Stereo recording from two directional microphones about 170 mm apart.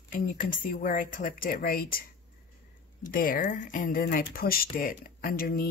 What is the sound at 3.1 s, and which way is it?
Speech, 55° left (ahead or behind).